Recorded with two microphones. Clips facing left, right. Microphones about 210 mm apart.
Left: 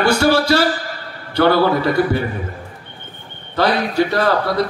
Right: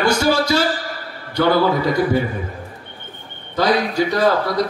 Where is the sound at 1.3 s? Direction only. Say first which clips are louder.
Left 2 dB; 60° left (ahead or behind).